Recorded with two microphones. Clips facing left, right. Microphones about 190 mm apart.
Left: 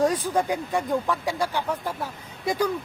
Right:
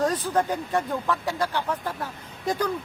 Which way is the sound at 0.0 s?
10° left (ahead or behind).